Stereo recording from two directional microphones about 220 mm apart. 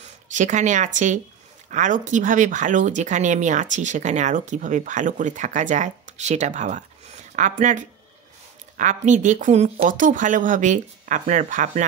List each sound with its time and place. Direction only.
0.0 s speech: 35° right (ahead or behind)